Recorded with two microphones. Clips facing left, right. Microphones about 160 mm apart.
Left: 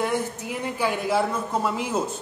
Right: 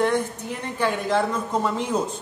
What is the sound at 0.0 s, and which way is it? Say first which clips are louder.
A woman's voice: right 3 dB; 10° left (ahead or behind).